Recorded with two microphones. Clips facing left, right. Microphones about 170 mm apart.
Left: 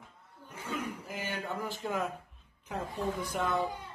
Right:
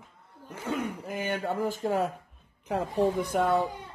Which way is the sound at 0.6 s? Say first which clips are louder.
Right 6 dB; 60° right (ahead or behind).